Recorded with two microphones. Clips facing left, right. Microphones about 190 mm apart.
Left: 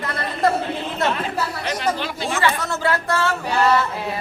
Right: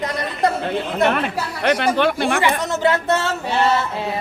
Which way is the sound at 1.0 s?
65° right (ahead or behind).